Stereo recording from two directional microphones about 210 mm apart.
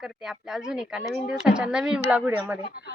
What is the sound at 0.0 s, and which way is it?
A woman's voice, 5° right (ahead or behind).